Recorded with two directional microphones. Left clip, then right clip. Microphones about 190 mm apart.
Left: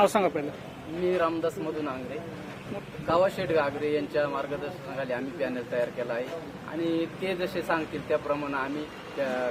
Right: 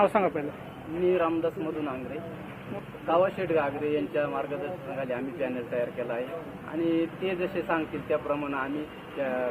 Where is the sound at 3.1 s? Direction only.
15° left (ahead or behind).